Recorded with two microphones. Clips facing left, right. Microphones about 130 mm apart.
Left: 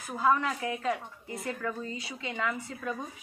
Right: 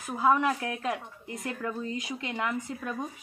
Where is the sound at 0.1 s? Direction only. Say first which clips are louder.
Right 2 dB; 15° right (ahead or behind).